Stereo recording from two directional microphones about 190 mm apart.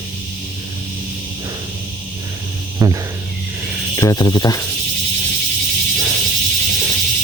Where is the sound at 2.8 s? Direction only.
20° right (ahead or behind).